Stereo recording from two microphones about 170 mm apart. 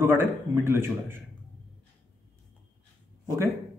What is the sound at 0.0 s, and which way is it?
A man's voice, 15° right (ahead or behind).